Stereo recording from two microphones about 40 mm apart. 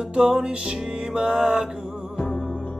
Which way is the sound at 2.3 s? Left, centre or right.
Centre.